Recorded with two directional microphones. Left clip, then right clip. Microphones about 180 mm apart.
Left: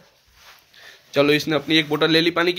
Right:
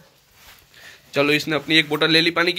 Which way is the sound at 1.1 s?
10° left (ahead or behind).